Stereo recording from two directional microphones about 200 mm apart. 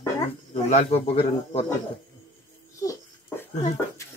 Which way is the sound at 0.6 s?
35° left (ahead or behind).